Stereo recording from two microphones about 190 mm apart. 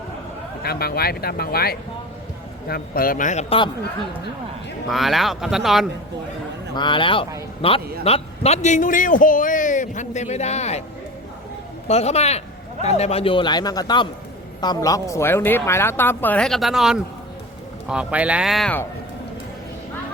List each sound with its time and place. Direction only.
0.6 s speech: 55° left (ahead or behind); by 3.7 s 35° left (ahead or behind)
4.9 s speech: centre (ahead or behind)
6.7 s a man's voice: 25° left (ahead or behind)
11.9 s a man's voice: 35° left (ahead or behind); by 18.9 s 5° left (ahead or behind)